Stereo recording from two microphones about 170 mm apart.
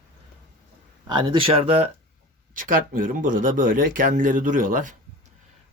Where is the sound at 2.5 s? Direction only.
55° right (ahead or behind).